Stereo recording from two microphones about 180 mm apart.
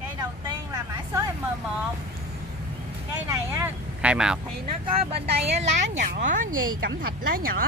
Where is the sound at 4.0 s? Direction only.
5° right (ahead or behind).